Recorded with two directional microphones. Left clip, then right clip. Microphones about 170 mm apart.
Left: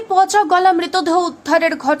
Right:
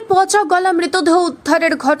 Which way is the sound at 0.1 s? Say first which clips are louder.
Even; 25° right (ahead or behind).